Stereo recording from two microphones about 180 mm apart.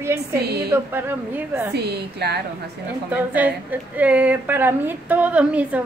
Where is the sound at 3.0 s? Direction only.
10° right (ahead or behind).